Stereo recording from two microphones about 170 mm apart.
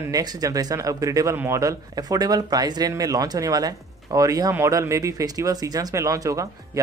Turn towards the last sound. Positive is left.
turn(degrees=-20)  # may be behind; listen again after turning